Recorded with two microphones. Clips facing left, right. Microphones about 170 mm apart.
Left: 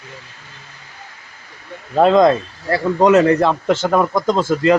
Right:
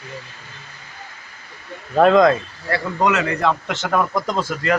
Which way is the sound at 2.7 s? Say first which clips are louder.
Left 7 dB; 35° left (ahead or behind).